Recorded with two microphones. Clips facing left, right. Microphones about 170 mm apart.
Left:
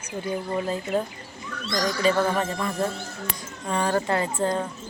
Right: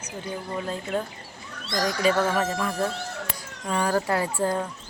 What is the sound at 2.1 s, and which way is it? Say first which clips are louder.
Speech: left 1 dB; 90° right.